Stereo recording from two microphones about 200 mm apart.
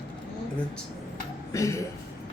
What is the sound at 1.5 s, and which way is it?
Speech, 15° left (ahead or behind).